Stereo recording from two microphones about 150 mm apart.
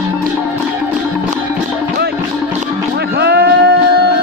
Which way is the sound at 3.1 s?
90° right.